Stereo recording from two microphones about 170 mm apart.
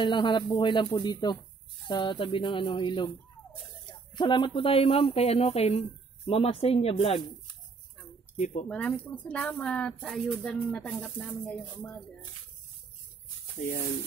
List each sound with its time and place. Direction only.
0.0 s speech: 25° left (ahead or behind)
4.2 s speech: 25° left (ahead or behind)
8.6 s speech: 5° left (ahead or behind)
13.6 s speech: 50° left (ahead or behind)